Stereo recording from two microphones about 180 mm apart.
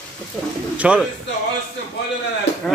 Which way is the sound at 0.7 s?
5° right (ahead or behind).